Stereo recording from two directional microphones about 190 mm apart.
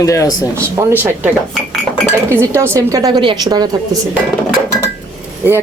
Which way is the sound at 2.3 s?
15° right (ahead or behind).